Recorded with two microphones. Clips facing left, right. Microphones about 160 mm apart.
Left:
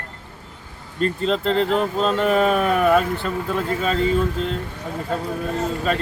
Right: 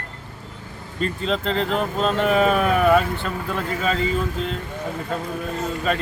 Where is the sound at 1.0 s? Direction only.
Centre (ahead or behind).